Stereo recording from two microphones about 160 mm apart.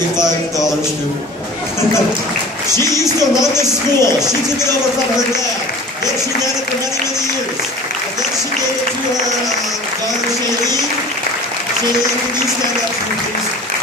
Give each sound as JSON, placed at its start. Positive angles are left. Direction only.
{"t": 3.2, "sound": "speech", "side_deg": -25}